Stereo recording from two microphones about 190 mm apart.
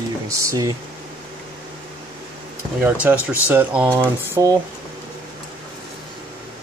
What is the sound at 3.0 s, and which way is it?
Speech, 10° right (ahead or behind).